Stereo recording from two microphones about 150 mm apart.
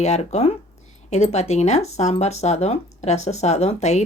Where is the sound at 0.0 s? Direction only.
45° left (ahead or behind).